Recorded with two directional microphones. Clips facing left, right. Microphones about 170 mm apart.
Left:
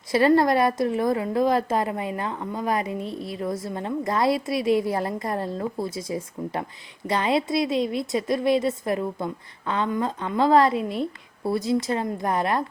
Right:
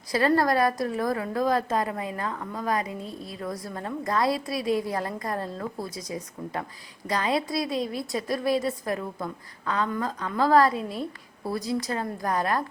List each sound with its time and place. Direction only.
0.1 s a woman's voice: 25° left (ahead or behind)